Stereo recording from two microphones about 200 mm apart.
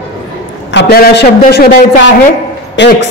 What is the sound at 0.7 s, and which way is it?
Speech, 55° left (ahead or behind).